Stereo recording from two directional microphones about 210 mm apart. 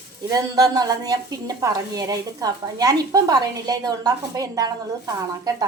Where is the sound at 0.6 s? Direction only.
15° right (ahead or behind).